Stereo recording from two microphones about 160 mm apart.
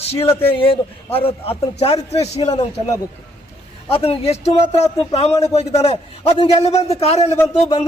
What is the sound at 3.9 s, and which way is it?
Speech, 35° left (ahead or behind).